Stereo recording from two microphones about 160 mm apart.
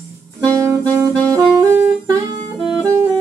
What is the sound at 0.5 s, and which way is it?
Saxophone, 20° right (ahead or behind).